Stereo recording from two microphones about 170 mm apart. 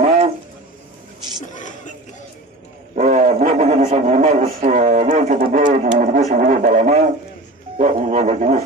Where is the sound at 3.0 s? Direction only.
40° right (ahead or behind).